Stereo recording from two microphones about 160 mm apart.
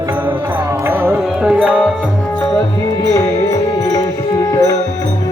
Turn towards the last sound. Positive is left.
turn(degrees=20)  # may be behind; listen again after turning